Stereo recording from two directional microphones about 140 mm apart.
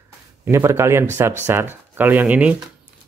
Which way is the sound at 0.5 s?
20° right (ahead or behind).